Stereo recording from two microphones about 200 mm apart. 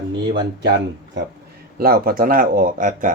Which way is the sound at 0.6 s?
55° right (ahead or behind).